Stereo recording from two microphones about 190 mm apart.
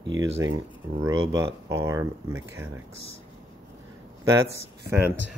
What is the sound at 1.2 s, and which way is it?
Speech, 20° right (ahead or behind).